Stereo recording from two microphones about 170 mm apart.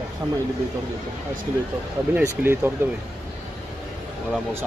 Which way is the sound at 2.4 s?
15° right (ahead or behind).